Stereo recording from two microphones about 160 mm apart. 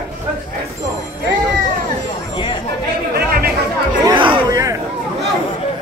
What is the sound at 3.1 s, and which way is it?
Chatter, 75° right (ahead or behind).